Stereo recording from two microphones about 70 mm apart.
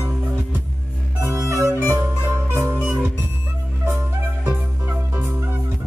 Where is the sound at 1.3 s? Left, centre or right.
Right.